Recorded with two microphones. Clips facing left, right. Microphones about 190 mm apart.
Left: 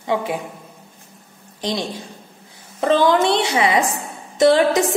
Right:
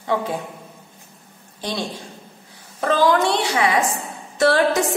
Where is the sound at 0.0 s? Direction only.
15° left (ahead or behind).